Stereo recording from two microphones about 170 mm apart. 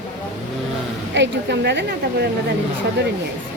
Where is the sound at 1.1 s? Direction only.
90° right.